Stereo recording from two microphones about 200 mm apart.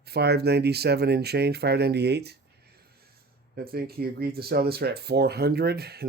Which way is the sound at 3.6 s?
50° right (ahead or behind).